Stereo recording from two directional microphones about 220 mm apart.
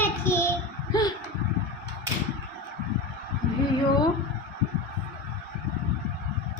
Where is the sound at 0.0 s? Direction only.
10° left (ahead or behind).